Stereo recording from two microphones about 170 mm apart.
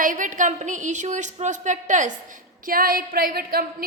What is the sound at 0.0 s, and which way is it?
A woman's voice, 50° right (ahead or behind).